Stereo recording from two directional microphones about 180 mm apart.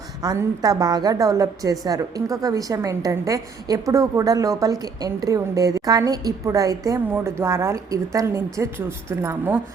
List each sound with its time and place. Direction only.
0.2 s a woman's voice: 20° right (ahead or behind)